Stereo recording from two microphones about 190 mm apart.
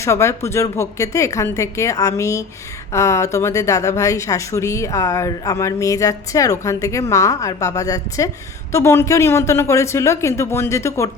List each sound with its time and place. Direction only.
0.0 s speech: 15° left (ahead or behind)